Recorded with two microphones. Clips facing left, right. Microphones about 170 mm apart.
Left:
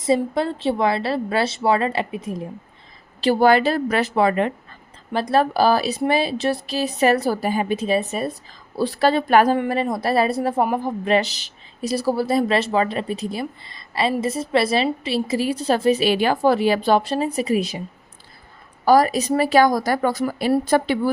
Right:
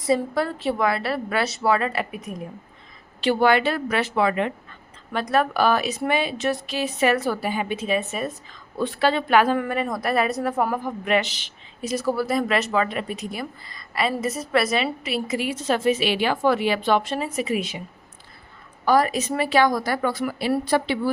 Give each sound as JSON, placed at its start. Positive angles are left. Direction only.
{"t": 0.0, "sound": "a woman's voice", "side_deg": 25}
{"t": 3.2, "sound": "a woman's voice", "side_deg": 40}
{"t": 9.6, "sound": "a woman's voice", "side_deg": 30}
{"t": 18.9, "sound": "a woman's voice", "side_deg": 40}
{"t": 20.7, "sound": "a woman's voice", "side_deg": 45}